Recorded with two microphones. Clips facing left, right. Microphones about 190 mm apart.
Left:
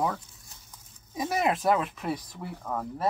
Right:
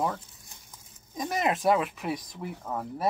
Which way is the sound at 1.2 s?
5° left (ahead or behind).